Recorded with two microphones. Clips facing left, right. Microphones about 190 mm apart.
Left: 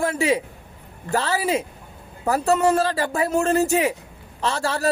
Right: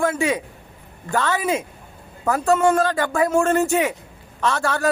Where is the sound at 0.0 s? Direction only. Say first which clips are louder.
Even; 30° left (ahead or behind).